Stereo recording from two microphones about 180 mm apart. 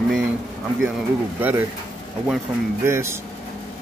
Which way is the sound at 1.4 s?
10° right (ahead or behind).